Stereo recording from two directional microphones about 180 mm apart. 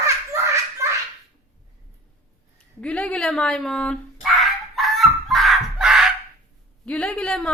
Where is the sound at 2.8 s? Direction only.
5° left (ahead or behind).